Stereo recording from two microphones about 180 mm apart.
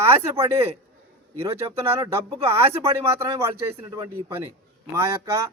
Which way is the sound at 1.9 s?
15° right (ahead or behind).